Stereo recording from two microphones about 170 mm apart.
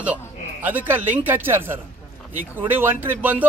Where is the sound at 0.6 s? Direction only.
10° right (ahead or behind).